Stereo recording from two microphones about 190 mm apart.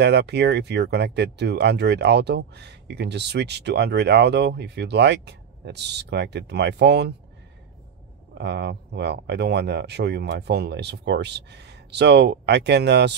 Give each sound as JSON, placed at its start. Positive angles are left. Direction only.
{"t": 0.0, "sound": "speech", "side_deg": -60}
{"t": 8.4, "sound": "speech", "side_deg": -65}